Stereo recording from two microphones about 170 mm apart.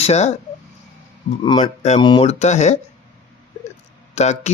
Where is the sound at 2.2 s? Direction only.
40° left (ahead or behind).